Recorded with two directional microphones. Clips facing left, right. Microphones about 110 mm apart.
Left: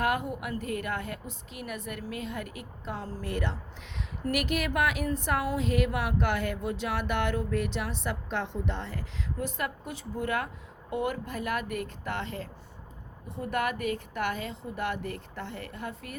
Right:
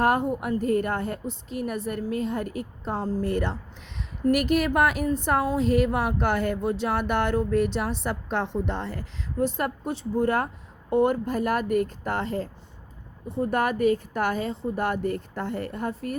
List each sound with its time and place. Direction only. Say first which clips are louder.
0.0 s a woman's voice: right 6 dB; 35° right (ahead or behind)